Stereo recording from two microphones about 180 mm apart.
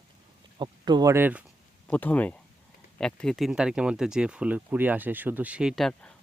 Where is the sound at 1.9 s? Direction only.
10° left (ahead or behind).